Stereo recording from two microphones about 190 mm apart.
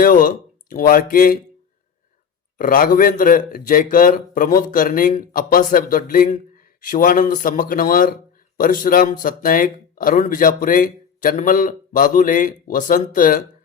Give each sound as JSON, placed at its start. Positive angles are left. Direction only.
{"t": 0.0, "sound": "speech", "side_deg": 45}
{"t": 2.6, "sound": "speech", "side_deg": 45}